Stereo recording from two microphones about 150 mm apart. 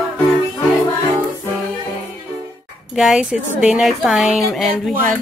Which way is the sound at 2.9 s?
5° right (ahead or behind).